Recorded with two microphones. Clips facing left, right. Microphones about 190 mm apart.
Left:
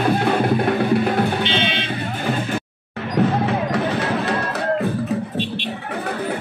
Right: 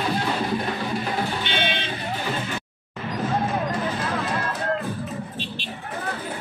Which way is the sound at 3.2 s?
70° left (ahead or behind).